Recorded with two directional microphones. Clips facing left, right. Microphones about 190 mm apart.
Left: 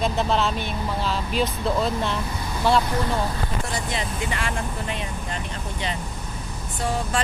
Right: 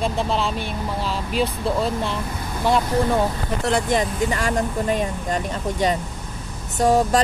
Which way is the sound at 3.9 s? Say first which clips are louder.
Right 7 dB; 45° right (ahead or behind).